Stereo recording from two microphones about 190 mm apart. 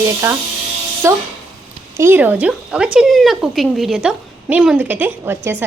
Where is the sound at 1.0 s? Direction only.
15° right (ahead or behind).